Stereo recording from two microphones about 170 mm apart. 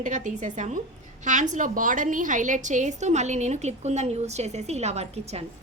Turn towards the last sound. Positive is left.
turn(degrees=-40)  # may be behind; listen again after turning